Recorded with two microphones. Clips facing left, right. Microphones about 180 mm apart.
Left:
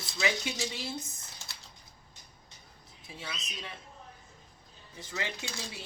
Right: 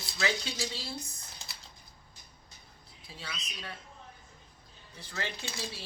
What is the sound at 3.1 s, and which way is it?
Speech, 20° left (ahead or behind).